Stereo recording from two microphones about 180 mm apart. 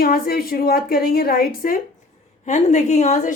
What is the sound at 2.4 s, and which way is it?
Speech, 40° left (ahead or behind).